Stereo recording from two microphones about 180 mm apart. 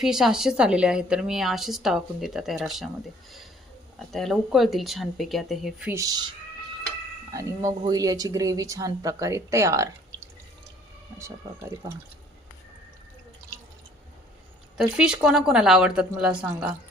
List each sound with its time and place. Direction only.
0.0 s a woman's voice: centre (ahead or behind)
4.1 s a woman's voice: centre (ahead or behind)
5.9 s speech: 20° right (ahead or behind)
7.3 s speech: 20° right (ahead or behind)
14.8 s a woman's voice: 5° right (ahead or behind)